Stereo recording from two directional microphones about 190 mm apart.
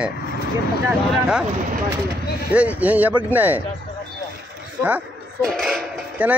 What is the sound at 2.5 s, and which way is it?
Speech, 5° right (ahead or behind).